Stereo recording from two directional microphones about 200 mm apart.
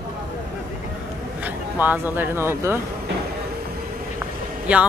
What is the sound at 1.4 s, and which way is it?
Speech, 10° right (ahead or behind).